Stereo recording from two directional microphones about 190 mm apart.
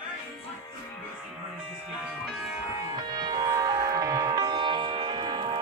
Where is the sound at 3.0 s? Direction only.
25° right (ahead or behind).